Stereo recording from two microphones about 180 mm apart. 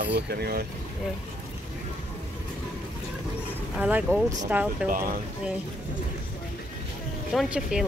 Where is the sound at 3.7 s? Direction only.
5° right (ahead or behind).